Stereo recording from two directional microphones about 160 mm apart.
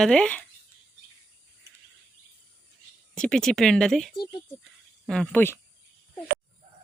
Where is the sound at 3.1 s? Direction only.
5° left (ahead or behind).